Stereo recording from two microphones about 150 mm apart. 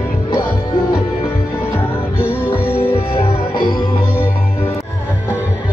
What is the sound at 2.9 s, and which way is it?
Music, 40° left (ahead or behind).